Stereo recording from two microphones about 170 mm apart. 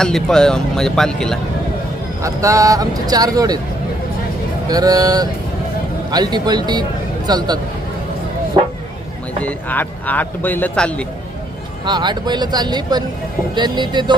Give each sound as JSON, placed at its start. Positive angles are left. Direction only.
{"t": 0.0, "sound": "speech", "side_deg": 5}
{"t": 2.2, "sound": "speech", "side_deg": -20}
{"t": 4.7, "sound": "speech", "side_deg": -20}
{"t": 9.4, "sound": "speech", "side_deg": 10}
{"t": 11.9, "sound": "speech", "side_deg": -25}